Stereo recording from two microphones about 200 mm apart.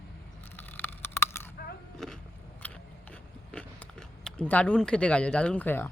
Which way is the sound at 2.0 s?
Centre (ahead or behind).